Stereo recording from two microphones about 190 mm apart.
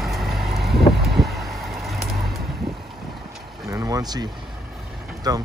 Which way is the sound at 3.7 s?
15° right (ahead or behind).